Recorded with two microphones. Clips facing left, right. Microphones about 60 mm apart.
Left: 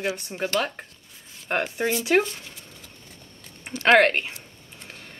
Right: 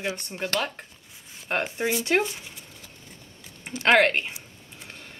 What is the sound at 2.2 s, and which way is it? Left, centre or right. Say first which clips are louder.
Speech: even; centre.